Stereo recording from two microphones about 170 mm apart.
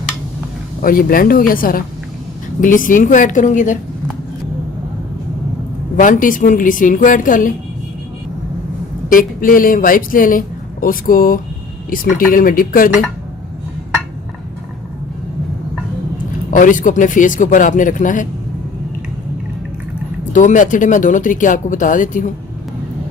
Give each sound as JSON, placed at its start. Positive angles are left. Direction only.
{"t": 0.8, "sound": "speech", "side_deg": 55}
{"t": 6.0, "sound": "speech", "side_deg": 50}
{"t": 9.0, "sound": "speech", "side_deg": 55}
{"t": 16.5, "sound": "speech", "side_deg": 50}
{"t": 20.3, "sound": "speech", "side_deg": 50}